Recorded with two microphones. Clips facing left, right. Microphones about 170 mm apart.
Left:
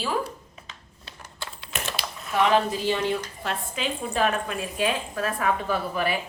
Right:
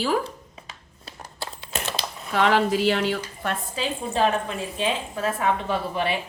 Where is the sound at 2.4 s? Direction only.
90° right.